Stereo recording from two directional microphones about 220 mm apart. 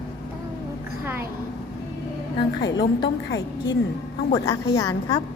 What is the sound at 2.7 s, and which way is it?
Speech, 15° left (ahead or behind).